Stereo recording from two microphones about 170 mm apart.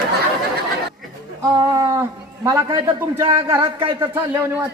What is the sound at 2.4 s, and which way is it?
A woman's voice, 20° right (ahead or behind).